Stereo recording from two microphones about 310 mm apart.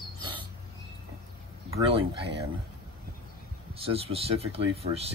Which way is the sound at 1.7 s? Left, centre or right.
Centre.